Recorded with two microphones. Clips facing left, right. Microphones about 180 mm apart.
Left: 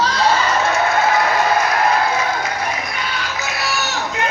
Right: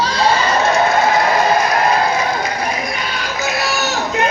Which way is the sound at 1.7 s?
35° right (ahead or behind).